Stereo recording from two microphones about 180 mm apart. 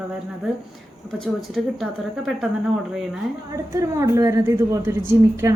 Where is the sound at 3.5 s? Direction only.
15° right (ahead or behind).